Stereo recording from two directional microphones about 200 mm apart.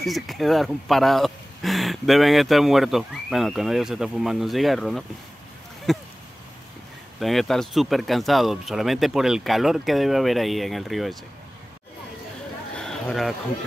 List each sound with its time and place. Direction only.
0.0 s speech: centre (ahead or behind)
7.2 s speech: centre (ahead or behind)
12.7 s a sound: 5° left (ahead or behind)